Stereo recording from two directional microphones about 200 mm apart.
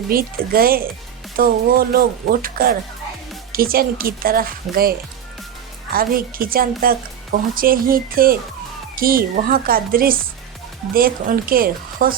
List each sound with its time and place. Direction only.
0.1 s speech: 45° right (ahead or behind)